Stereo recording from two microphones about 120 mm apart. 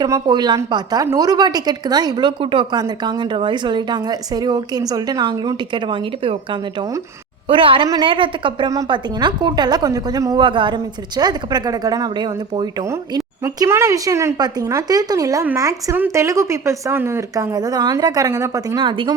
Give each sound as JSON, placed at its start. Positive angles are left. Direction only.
{"t": 0.0, "sound": "a woman's voice", "side_deg": -35}
{"t": 10.4, "sound": "a woman's voice", "side_deg": -40}
{"t": 12.8, "sound": "a woman's voice", "side_deg": -25}
{"t": 18.8, "sound": "a woman's voice", "side_deg": -40}